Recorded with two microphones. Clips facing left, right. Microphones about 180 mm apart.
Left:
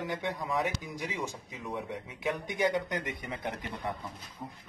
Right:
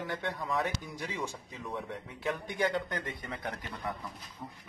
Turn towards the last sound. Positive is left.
turn(degrees=15)  # may be behind; listen again after turning